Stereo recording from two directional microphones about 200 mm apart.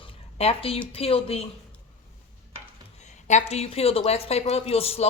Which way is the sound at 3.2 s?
35° left (ahead or behind).